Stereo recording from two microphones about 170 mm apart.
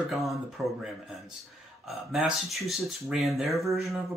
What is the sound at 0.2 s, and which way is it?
Speech, centre (ahead or behind).